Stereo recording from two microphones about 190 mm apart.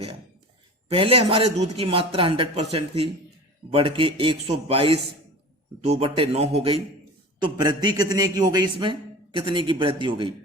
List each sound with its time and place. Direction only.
0.9 s a man's voice: 30° right (ahead or behind)